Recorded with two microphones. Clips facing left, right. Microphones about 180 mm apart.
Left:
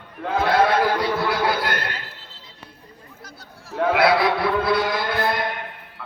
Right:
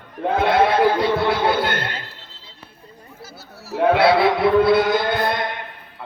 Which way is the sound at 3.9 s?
30° right (ahead or behind).